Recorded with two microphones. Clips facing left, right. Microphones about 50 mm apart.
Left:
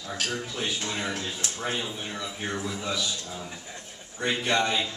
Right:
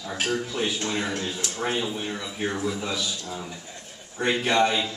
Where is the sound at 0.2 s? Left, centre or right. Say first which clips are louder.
Right 6 dB; centre.